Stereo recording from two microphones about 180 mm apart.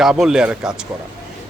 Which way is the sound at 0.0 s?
5° right (ahead or behind).